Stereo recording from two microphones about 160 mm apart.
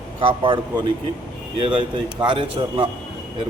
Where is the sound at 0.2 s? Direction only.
30° right (ahead or behind).